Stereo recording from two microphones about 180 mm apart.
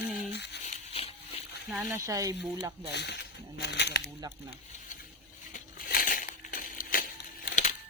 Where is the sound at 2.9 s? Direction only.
70° left (ahead or behind).